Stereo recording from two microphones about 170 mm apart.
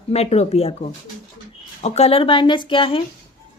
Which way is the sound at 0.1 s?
40° left (ahead or behind).